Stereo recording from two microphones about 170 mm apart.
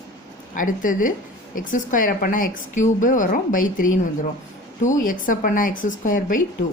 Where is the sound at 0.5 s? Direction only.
50° left (ahead or behind).